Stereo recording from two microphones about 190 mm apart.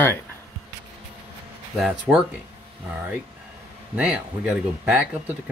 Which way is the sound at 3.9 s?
5° right (ahead or behind).